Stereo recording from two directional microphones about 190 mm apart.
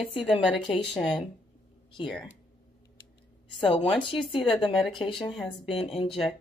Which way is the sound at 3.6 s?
25° left (ahead or behind).